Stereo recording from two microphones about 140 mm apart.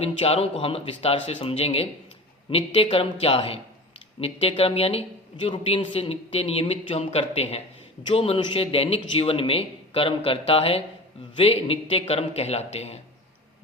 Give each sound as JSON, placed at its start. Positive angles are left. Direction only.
{"t": 0.0, "sound": "speech", "side_deg": 45}